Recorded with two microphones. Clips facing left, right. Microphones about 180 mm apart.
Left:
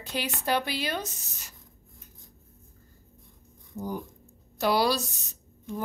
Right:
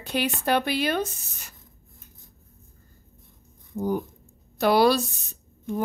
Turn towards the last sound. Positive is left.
turn(degrees=-55)  # may be behind; listen again after turning